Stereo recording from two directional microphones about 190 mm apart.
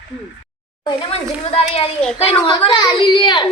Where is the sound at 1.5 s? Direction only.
30° left (ahead or behind).